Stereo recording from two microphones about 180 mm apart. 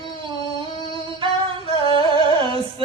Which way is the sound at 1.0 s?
30° right (ahead or behind).